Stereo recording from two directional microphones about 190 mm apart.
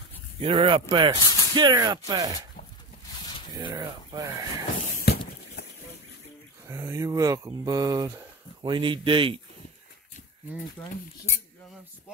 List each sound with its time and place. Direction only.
0.4 s speech: 25° right (ahead or behind)
1.2 s a sound: 20° left (ahead or behind)
1.5 s speech: 20° right (ahead or behind)
3.5 s speech: 20° right (ahead or behind)
4.9 s a sound: 55° left (ahead or behind)
6.7 s speech: 15° right (ahead or behind)